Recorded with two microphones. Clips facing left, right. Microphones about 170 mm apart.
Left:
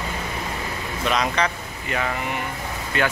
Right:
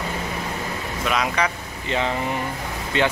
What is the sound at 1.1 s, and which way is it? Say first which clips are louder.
Speech: left 1 dB; 5° right (ahead or behind).